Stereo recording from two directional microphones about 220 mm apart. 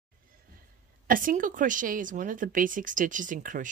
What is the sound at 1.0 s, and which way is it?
Speech, 40° right (ahead or behind).